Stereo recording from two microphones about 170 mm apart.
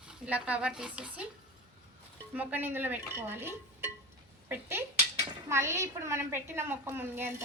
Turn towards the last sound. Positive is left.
turn(degrees=-15)  # may be behind; listen again after turning